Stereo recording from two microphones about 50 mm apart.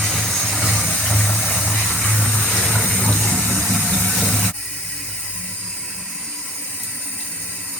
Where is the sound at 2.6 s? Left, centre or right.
Left.